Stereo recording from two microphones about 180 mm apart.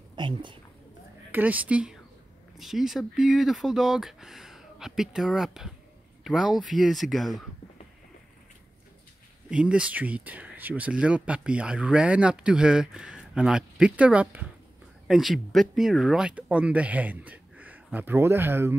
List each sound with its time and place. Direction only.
0.1 s a sound: 25° right (ahead or behind)
1.3 s speech: 10° right (ahead or behind)
9.5 s speech: 5° right (ahead or behind)